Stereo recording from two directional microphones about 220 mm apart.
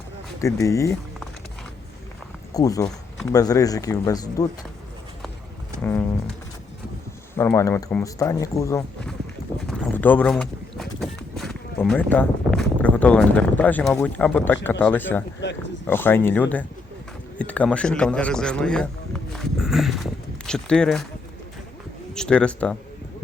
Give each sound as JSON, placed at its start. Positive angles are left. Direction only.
{"t": 0.4, "sound": "speech", "side_deg": 15}
{"t": 2.5, "sound": "speech", "side_deg": 15}
{"t": 5.8, "sound": "speech", "side_deg": 10}
{"t": 7.3, "sound": "speech", "side_deg": 10}
{"t": 9.6, "sound": "clip-clop", "side_deg": 10}
{"t": 12.6, "sound": "speech", "side_deg": 5}
{"t": 15.4, "sound": "speech", "side_deg": 55}
{"t": 15.9, "sound": "a man's voice", "side_deg": 10}
{"t": 22.1, "sound": "speech", "side_deg": 5}